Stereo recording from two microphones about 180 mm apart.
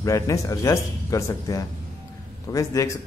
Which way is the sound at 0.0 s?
15° left (ahead or behind).